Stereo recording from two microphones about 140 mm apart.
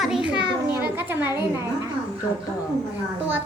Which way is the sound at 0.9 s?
15° right (ahead or behind).